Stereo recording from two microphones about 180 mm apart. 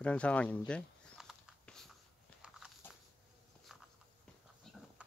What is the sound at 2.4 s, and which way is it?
Biting, 5° right (ahead or behind).